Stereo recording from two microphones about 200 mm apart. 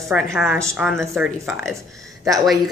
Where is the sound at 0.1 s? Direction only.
Centre (ahead or behind).